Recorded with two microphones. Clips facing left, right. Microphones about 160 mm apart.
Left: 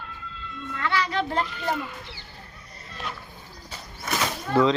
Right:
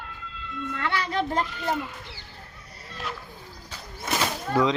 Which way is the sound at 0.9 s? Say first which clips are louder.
Left 2 dB; 55° right (ahead or behind).